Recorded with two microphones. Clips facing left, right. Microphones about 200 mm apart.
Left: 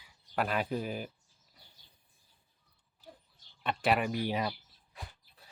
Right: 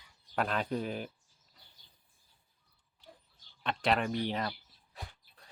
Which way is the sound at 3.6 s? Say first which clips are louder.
Left 1 dB; 5° left (ahead or behind).